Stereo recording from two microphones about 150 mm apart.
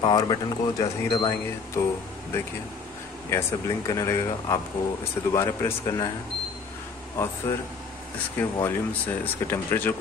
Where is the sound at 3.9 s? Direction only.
20° left (ahead or behind).